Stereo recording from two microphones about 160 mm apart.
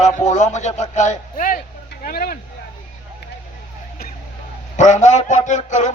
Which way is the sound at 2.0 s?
70° left (ahead or behind).